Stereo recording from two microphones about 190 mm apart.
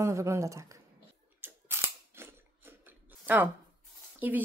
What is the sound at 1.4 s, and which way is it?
Chewing, 10° right (ahead or behind).